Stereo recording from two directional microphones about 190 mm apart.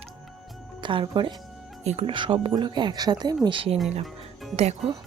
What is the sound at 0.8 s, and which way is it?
Speech, 25° right (ahead or behind).